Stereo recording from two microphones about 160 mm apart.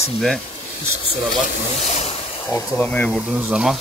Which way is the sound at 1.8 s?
45° left (ahead or behind).